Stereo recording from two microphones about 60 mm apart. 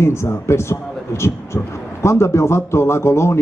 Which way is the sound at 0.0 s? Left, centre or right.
Left.